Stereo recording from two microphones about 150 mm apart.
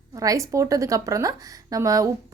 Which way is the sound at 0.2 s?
20° right (ahead or behind).